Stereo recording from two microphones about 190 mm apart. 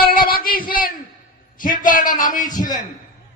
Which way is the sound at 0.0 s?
50° left (ahead or behind).